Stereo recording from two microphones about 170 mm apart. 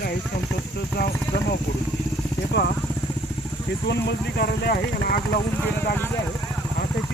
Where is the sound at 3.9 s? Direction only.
75° left (ahead or behind).